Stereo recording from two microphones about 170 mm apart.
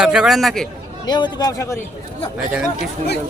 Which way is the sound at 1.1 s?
25° left (ahead or behind).